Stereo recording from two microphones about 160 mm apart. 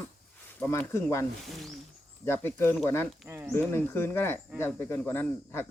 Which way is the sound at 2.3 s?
15° left (ahead or behind).